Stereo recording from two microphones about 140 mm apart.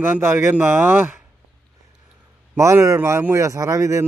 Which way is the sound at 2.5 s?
20° right (ahead or behind).